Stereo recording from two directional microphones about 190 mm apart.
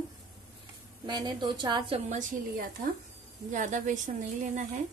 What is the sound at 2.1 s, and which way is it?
A woman's voice, 45° right (ahead or behind).